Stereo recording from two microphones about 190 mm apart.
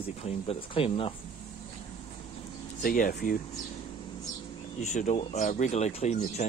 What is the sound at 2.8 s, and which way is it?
Speech, 45° left (ahead or behind).